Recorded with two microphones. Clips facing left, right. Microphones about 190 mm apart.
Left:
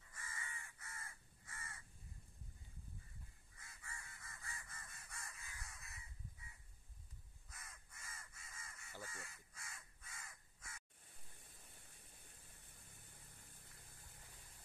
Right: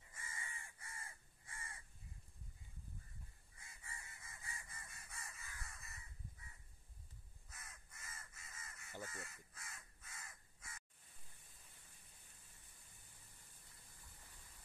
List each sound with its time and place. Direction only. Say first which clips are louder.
0.0 s crow: even; 20° right (ahead or behind)
3.5 s honk: even; 20° right (ahead or behind)
4.9 s crow: even; centre (ahead or behind)
7.4 s crow: even; 5° right (ahead or behind)